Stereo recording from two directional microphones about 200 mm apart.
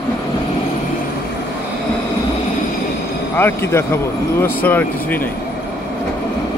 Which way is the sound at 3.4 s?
10° left (ahead or behind).